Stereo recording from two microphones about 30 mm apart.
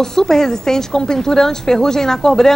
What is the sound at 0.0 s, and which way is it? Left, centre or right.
A woman's voice, centre.